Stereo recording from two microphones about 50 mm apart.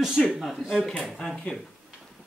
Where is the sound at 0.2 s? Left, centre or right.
Centre.